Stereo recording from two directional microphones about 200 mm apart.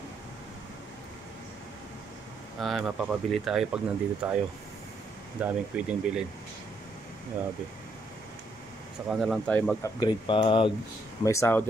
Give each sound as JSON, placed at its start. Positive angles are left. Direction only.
{"t": 2.6, "sound": "speech", "side_deg": 0}
{"t": 5.4, "sound": "speech", "side_deg": -5}
{"t": 9.1, "sound": "speech", "side_deg": 0}
{"t": 9.9, "sound": "speech", "side_deg": 25}
{"t": 11.2, "sound": "speech", "side_deg": 15}